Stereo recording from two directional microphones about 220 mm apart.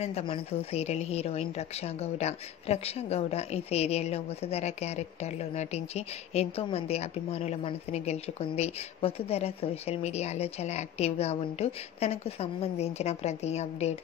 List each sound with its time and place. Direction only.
0.0 s a woman's voice: 25° left (ahead or behind)